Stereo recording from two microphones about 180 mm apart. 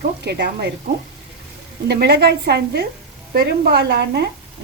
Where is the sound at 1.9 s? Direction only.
65° right (ahead or behind).